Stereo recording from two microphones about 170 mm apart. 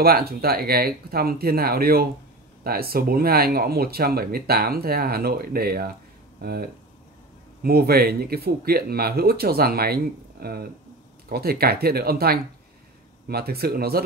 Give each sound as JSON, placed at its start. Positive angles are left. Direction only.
{"t": 0.0, "sound": "speech", "side_deg": -65}